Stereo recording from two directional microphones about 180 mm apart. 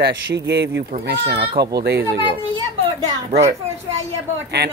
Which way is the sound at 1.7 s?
60° right (ahead or behind).